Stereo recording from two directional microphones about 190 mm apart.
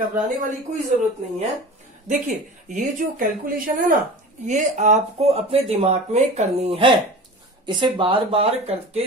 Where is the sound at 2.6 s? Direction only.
45° right (ahead or behind).